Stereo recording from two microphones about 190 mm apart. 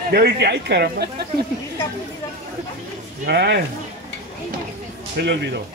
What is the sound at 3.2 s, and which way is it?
Speech, 60° right (ahead or behind).